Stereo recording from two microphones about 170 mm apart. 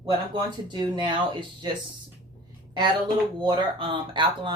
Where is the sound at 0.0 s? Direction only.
25° right (ahead or behind).